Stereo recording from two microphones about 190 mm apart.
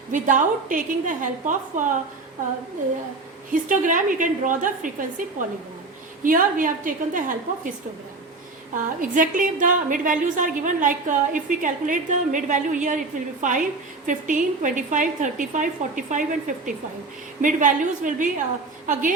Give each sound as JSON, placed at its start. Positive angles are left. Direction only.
{"t": 0.1, "sound": "a woman's voice", "side_deg": -45}
{"t": 3.5, "sound": "a woman's voice", "side_deg": -45}
{"t": 8.7, "sound": "a woman's voice", "side_deg": -45}